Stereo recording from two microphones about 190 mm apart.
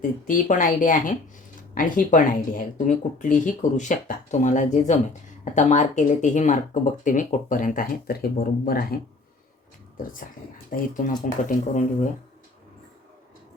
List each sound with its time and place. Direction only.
0.3 s speech: 45° left (ahead or behind)
10.7 s speech: 45° left (ahead or behind)